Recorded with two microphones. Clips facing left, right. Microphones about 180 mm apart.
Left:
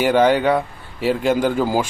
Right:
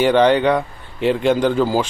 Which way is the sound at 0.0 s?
5° left (ahead or behind).